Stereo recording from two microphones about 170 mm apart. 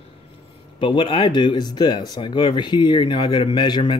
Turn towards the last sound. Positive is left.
turn(degrees=25)  # may be behind; listen again after turning